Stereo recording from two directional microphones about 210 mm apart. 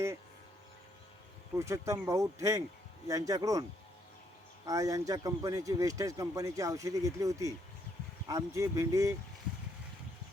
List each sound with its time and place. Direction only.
1.5 s speech: 15° right (ahead or behind)